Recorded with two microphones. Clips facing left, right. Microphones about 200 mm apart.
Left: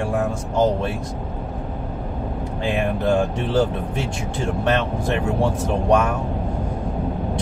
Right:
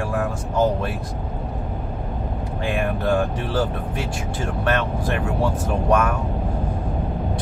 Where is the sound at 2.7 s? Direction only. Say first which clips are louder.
Left 2 dB; 25° left (ahead or behind).